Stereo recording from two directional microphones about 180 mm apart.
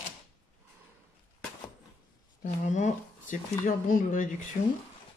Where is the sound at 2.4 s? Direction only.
40° left (ahead or behind).